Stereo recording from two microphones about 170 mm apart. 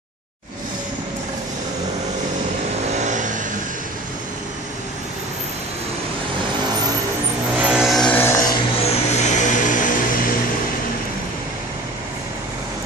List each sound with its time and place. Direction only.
2.9 s vehicle: 45° right (ahead or behind)
7.5 s music: 5° right (ahead or behind); by 8.5 s 15° left (ahead or behind)
8.8 s vehicle: 40° left (ahead or behind)